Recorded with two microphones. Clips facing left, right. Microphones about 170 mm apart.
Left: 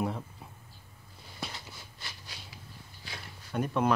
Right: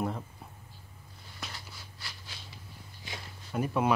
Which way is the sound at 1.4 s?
20° left (ahead or behind).